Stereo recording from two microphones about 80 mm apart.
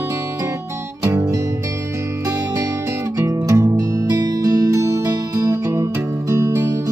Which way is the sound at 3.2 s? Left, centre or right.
Right.